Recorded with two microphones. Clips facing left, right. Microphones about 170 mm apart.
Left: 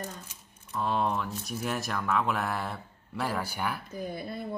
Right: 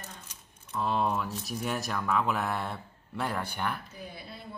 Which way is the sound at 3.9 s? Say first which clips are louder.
Left 8 dB; 45° left (ahead or behind).